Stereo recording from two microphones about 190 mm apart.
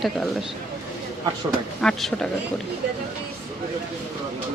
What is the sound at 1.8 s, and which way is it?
Speech, centre (ahead or behind).